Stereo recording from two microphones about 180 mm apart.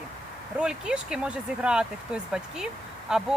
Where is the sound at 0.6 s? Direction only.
5° right (ahead or behind).